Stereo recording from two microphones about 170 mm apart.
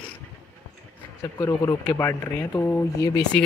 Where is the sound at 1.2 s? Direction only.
15° left (ahead or behind).